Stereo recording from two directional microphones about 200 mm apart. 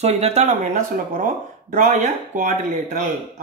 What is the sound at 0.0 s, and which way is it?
Speech, 30° right (ahead or behind).